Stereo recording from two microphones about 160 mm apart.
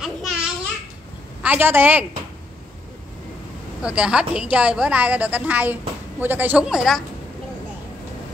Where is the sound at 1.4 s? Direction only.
10° right (ahead or behind).